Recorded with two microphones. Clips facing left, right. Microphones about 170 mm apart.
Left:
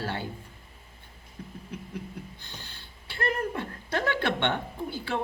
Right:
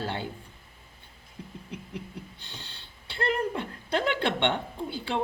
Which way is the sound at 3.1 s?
25° right (ahead or behind).